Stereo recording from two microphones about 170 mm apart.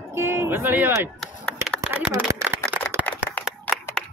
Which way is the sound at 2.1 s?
20° right (ahead or behind).